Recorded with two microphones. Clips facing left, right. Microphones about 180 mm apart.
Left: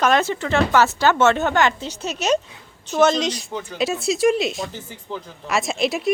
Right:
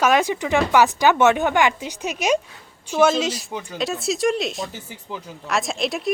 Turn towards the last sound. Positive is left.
turn(degrees=0)  # may be behind; listen again after turning